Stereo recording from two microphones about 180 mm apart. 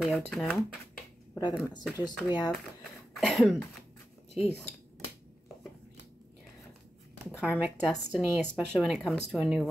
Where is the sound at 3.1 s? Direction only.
Centre (ahead or behind).